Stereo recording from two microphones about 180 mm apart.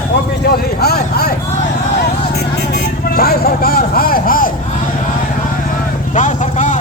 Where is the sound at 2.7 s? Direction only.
55° left (ahead or behind).